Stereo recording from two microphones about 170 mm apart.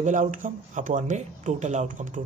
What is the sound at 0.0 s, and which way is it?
Speech, 45° right (ahead or behind).